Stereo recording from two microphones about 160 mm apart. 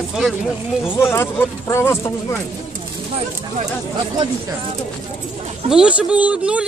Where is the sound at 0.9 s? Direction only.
15° left (ahead or behind).